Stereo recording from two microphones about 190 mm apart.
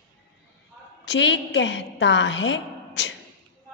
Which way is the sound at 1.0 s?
70° left (ahead or behind).